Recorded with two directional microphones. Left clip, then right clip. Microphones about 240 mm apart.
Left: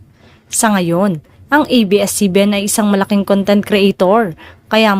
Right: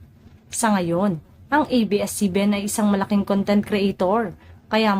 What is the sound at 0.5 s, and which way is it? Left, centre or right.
A woman's voice, left.